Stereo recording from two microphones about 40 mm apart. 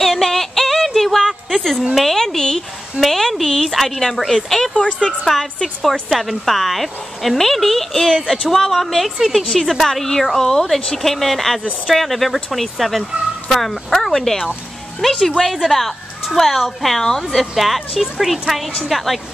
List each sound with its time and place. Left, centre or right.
0.0 s synthetic singing: centre
2.0 s a woman's voice: centre
3.0 s a woman's voice: centre
4.7 s speech: left
5.2 s a woman's voice: centre